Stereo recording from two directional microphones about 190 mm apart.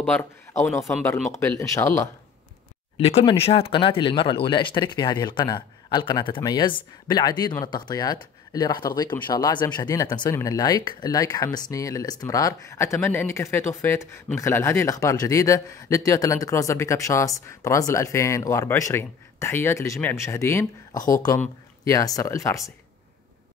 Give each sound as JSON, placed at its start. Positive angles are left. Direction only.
{"t": 0.0, "sound": "a man's voice", "side_deg": 5}
{"t": 3.0, "sound": "speech", "side_deg": 35}